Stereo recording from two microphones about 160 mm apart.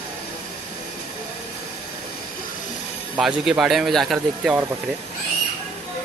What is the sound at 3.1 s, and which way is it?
Speech, centre (ahead or behind).